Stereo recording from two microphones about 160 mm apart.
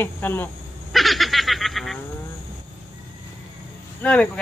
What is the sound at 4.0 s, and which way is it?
Speech, 10° left (ahead or behind).